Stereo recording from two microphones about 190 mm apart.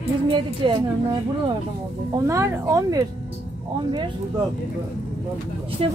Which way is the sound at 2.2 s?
15° right (ahead or behind).